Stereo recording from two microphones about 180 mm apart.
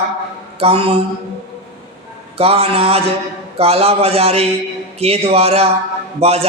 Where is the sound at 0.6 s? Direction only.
30° right (ahead or behind).